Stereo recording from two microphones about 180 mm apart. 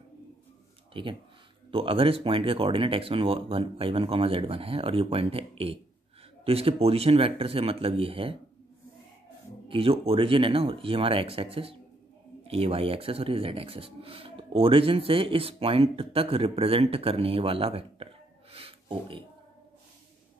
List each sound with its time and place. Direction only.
1.0 s speech: 30° right (ahead or behind)
9.7 s speech: 30° right (ahead or behind)
18.5 s a sound: 30° right (ahead or behind)